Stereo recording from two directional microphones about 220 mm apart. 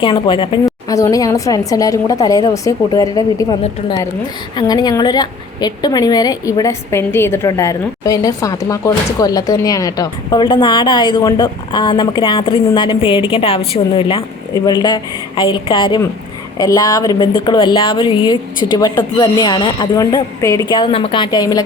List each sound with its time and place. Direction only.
0.0 s a woman's voice: 20° left (ahead or behind)